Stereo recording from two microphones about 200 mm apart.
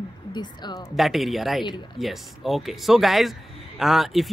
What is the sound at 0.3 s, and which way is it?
Speech, 20° left (ahead or behind).